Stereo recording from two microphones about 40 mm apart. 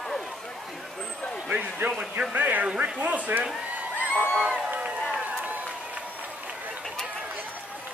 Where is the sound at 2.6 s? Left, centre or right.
Right.